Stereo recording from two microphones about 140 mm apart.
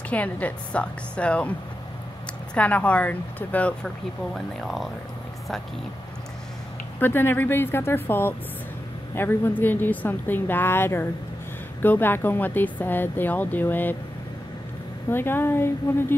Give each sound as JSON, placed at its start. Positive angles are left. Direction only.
{"t": 0.1, "sound": "speech", "side_deg": 10}
{"t": 7.0, "sound": "speech", "side_deg": 15}
{"t": 15.0, "sound": "speech", "side_deg": 15}